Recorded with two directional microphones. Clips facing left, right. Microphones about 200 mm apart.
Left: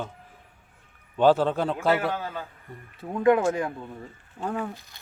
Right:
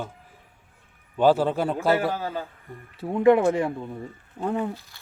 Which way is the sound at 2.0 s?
35° right (ahead or behind).